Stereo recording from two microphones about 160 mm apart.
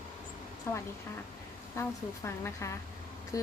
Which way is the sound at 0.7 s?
15° left (ahead or behind).